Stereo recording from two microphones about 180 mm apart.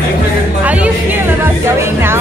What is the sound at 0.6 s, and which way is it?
Music, 10° right (ahead or behind).